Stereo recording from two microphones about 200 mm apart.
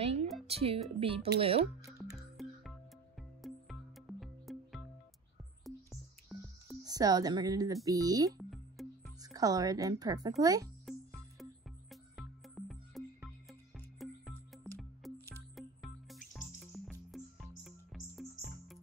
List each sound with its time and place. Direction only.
0.0 s music: 30° right (ahead or behind)
0.5 s speech: 30° right (ahead or behind)
2.1 s music: centre (ahead or behind)
5.7 s music: centre (ahead or behind)
6.8 s speech: 20° right (ahead or behind)
8.3 s music: centre (ahead or behind)
9.2 s a woman's voice: 20° right (ahead or behind)
11.9 s music: centre (ahead or behind)